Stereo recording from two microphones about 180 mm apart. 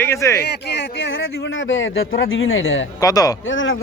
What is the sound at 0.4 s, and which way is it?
Speech, 65° left (ahead or behind).